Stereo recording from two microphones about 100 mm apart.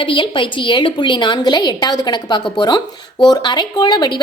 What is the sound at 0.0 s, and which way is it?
A woman's voice, 55° left (ahead or behind).